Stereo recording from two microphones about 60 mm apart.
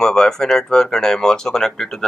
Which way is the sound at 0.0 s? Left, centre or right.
Centre.